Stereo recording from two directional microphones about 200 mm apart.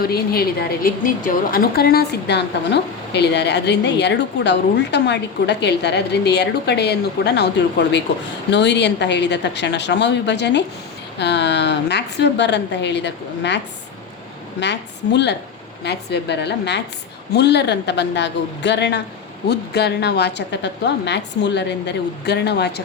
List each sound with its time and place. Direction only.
0.0 s speech: 50° left (ahead or behind)
14.6 s speech: 60° left (ahead or behind)